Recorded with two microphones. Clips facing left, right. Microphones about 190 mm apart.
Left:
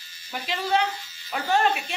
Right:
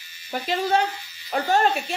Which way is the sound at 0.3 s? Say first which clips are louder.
Right 3 dB; 45° right (ahead or behind).